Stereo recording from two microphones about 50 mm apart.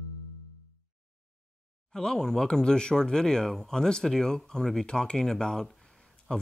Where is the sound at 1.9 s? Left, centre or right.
Centre.